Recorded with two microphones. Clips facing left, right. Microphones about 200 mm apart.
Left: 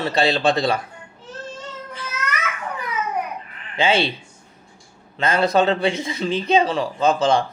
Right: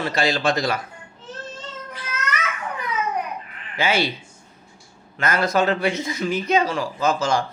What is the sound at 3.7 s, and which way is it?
Speech, 30° left (ahead or behind).